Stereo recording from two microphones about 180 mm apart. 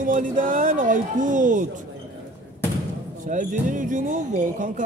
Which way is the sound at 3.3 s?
45° right (ahead or behind).